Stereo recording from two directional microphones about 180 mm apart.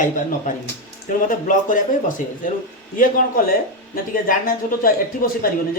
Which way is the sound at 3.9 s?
50° left (ahead or behind).